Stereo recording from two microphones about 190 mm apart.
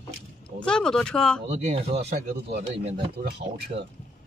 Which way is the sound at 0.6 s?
5° left (ahead or behind).